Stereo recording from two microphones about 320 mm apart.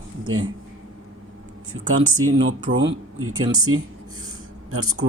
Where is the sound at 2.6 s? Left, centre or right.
Centre.